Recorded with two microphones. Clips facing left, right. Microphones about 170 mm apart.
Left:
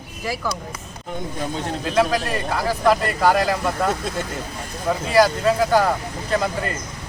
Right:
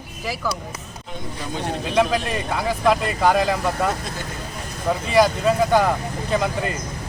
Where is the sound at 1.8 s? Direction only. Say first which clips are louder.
Even; centre (ahead or behind).